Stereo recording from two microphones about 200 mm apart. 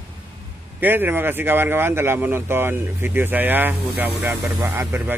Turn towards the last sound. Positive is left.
turn(degrees=-10)  # may be behind; listen again after turning